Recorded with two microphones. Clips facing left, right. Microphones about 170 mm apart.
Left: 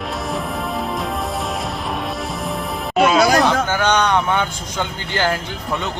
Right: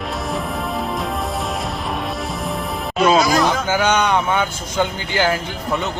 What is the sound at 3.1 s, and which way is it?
Speech, 60° left (ahead or behind).